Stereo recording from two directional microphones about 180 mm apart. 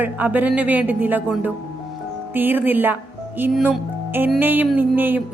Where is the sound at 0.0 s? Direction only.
10° right (ahead or behind).